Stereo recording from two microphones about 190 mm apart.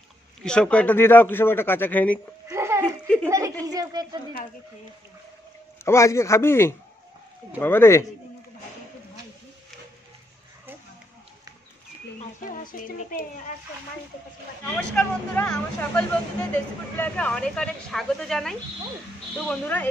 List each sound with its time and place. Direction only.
0.4 s a man's voice: 5° left (ahead or behind)
2.4 s giggle: 15° right (ahead or behind)
3.3 s a sound: 15° right (ahead or behind)
5.9 s a man's voice: 15° left (ahead or behind)
12.4 s speech: 45° left (ahead or behind)
14.8 s a man's voice: 5° left (ahead or behind)